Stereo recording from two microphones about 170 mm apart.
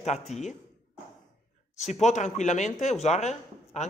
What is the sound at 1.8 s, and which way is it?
A woman's voice, 45° left (ahead or behind).